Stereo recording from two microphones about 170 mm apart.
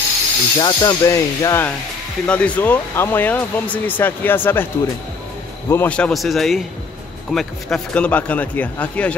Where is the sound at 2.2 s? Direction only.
5° left (ahead or behind).